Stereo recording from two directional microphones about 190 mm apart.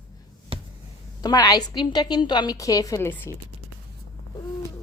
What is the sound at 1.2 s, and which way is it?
A woman's voice, 20° left (ahead or behind).